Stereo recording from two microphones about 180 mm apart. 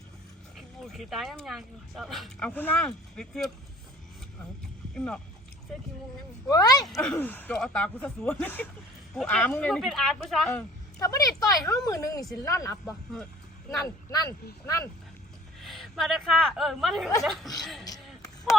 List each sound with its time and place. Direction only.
0.5 s speech: centre (ahead or behind)
2.5 s speech: 10° left (ahead or behind)
4.9 s speech: 5° left (ahead or behind)
6.5 s a woman's voice: 20° left (ahead or behind)
6.8 s speech: centre (ahead or behind)
10.5 s a woman's voice: 15° left (ahead or behind)
15.6 s speech: centre (ahead or behind)